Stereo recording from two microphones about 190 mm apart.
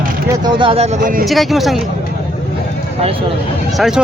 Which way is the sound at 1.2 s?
Centre (ahead or behind).